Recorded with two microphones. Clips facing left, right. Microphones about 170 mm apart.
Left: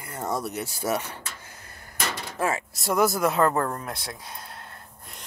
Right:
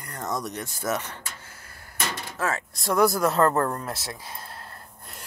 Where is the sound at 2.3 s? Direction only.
15° left (ahead or behind).